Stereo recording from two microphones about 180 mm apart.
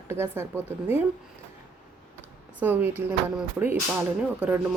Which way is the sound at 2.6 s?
10° right (ahead or behind).